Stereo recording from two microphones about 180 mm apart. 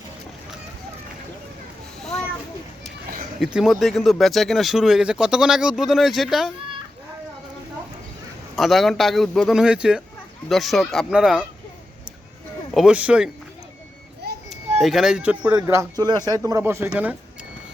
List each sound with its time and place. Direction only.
3.4 s speech: 5° right (ahead or behind)
8.5 s speech: centre (ahead or behind)
12.7 s speech: 5° right (ahead or behind)
14.8 s speech: centre (ahead or behind)
15.6 s speech: 15° right (ahead or behind)